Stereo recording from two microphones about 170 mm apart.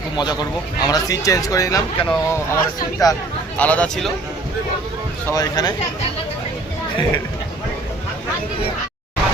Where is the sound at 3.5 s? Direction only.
10° left (ahead or behind).